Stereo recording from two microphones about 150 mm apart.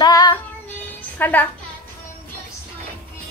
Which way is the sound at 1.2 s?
10° left (ahead or behind).